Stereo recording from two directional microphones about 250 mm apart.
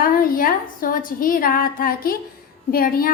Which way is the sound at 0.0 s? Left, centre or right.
Left.